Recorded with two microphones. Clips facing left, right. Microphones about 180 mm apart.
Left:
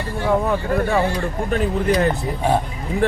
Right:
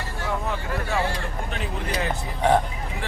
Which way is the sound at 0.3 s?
55° left (ahead or behind).